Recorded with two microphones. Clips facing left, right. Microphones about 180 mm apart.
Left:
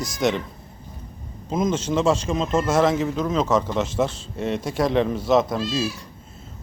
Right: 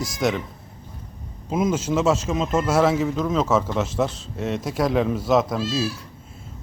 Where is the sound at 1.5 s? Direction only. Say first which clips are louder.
Even; 10° right (ahead or behind).